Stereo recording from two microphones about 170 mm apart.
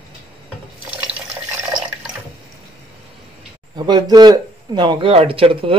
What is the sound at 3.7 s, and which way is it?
Speech, 25° right (ahead or behind).